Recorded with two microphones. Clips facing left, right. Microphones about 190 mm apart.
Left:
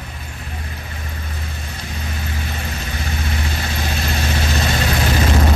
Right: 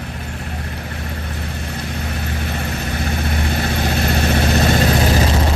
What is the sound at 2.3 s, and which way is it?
Vehicle, 55° right (ahead or behind).